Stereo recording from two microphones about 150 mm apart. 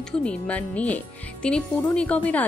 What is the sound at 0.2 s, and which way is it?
Speech, 10° left (ahead or behind).